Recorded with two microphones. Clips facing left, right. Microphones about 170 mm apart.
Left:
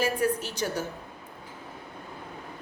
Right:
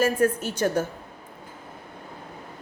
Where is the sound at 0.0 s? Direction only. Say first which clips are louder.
Right 4 dB; 50° right (ahead or behind).